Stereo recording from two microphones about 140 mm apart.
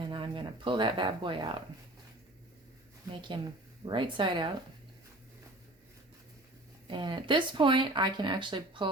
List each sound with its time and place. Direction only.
0.0 s a sound: 35° right (ahead or behind)
3.1 s speech: 35° right (ahead or behind)
6.8 s speech: 35° right (ahead or behind)